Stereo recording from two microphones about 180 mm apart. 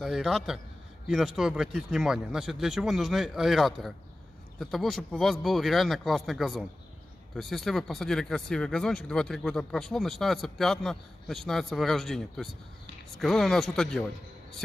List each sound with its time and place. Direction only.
0.0 s speech: centre (ahead or behind)